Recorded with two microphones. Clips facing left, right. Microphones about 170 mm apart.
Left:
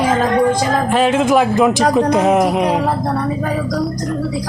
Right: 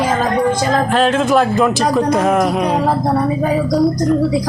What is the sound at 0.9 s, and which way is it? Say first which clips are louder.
Speech: left 1 dB; 15° left (ahead or behind).